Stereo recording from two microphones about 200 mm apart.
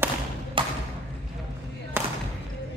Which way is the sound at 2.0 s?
10° right (ahead or behind).